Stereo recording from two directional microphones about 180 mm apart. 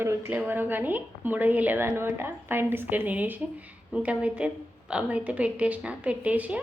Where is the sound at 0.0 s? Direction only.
15° right (ahead or behind).